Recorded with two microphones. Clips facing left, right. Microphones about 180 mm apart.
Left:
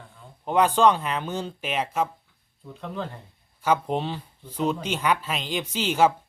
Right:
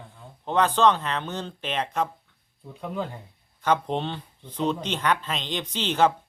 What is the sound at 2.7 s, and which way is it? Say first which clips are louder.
Speech: right 2 dB; 10° right (ahead or behind).